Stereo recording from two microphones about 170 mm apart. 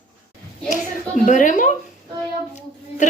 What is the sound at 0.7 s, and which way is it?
A woman's voice, 45° left (ahead or behind).